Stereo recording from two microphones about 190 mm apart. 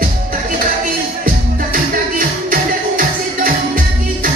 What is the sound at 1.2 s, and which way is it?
Music, 45° right (ahead or behind).